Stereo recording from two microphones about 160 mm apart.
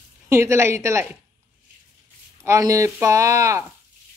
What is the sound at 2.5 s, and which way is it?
Speech, 20° right (ahead or behind).